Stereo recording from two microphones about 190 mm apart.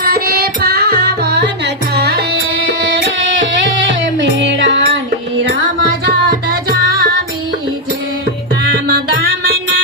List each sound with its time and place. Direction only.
0.0 s carnatic music: 50° right (ahead or behind)
4.2 s music: 70° right (ahead or behind)
6.5 s music: 50° right (ahead or behind)